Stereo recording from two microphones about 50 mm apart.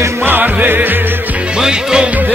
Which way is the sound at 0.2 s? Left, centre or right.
Right.